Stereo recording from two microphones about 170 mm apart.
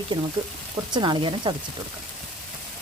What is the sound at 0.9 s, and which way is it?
Speech, 25° right (ahead or behind).